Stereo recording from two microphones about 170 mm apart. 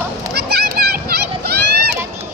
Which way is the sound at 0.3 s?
70° right (ahead or behind).